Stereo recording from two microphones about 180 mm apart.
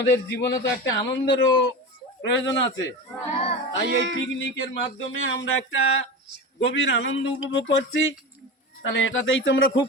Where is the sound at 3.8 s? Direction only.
75° right (ahead or behind).